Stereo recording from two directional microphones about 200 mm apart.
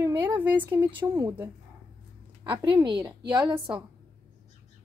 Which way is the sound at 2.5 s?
20° right (ahead or behind).